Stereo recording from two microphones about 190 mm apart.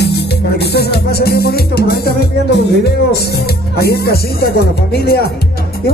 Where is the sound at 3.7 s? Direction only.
55° left (ahead or behind).